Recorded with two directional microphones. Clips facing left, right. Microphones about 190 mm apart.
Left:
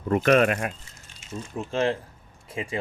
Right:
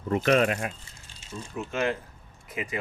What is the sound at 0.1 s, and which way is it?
Speech, 55° left (ahead or behind).